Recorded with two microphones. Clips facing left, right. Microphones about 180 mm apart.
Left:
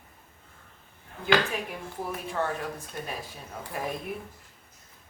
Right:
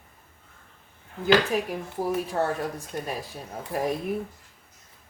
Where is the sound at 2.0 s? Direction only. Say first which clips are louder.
Right 5 dB; 40° right (ahead or behind).